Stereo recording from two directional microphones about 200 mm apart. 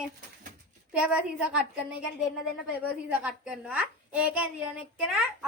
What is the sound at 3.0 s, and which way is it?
A woman's voice, 5° right (ahead or behind).